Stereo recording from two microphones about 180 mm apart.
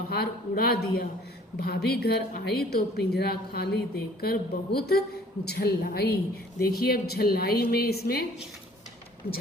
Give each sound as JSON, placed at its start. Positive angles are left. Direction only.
{"t": 0.1, "sound": "a woman's voice", "side_deg": 60}